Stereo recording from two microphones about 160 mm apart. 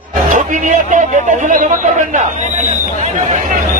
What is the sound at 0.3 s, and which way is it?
A man's voice, 50° right (ahead or behind).